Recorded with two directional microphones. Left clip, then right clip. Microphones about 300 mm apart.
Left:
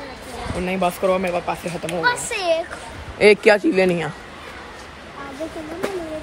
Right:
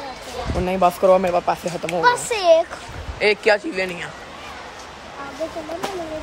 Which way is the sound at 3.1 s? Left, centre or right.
Centre.